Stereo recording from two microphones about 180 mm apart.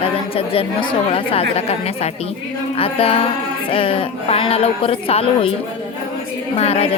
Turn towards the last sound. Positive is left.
turn(degrees=35)  # may be behind; listen again after turning